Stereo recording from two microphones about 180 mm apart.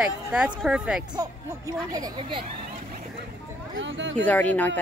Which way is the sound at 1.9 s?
20° right (ahead or behind).